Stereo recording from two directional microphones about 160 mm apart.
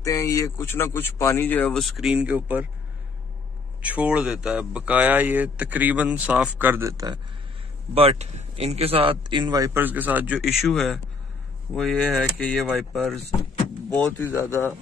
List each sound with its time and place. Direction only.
0.0 s speech: 20° left (ahead or behind); by 2.7 s 10° right (ahead or behind)
3.9 s speech: 5° right (ahead or behind)
7.9 s a man's voice: 40° right (ahead or behind)
9.8 s speech: 10° right (ahead or behind); by 14.6 s 15° left (ahead or behind)